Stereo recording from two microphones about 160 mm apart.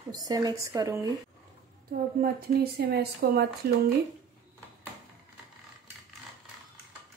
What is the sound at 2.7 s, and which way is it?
Speech, 80° right.